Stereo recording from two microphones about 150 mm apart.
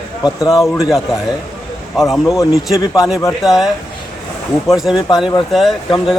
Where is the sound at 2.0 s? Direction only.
Centre (ahead or behind).